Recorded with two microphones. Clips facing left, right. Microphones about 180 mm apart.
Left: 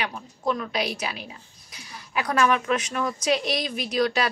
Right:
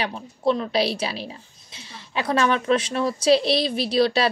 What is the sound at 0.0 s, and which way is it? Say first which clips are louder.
A woman's voice: right 5 dB; 30° right (ahead or behind).